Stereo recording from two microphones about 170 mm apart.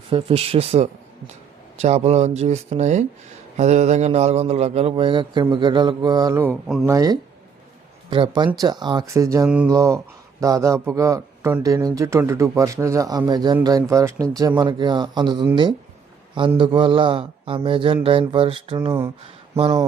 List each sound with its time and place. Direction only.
0.1 s speech: 35° right (ahead or behind)
8.5 s speech: 25° right (ahead or behind)
16.6 s speech: 30° right (ahead or behind)
18.9 s speech: 15° right (ahead or behind)